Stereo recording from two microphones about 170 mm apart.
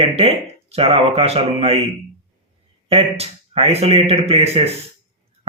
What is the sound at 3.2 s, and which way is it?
Speech, 35° right (ahead or behind).